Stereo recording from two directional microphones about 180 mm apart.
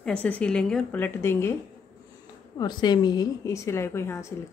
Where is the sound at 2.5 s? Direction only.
25° left (ahead or behind).